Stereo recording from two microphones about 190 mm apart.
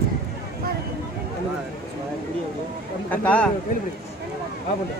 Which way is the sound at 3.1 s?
5° left (ahead or behind).